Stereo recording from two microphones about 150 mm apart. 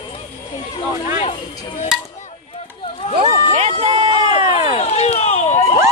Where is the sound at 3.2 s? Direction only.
45° right (ahead or behind).